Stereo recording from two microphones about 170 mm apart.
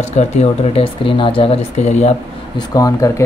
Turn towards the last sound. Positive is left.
turn(degrees=20)  # may be behind; listen again after turning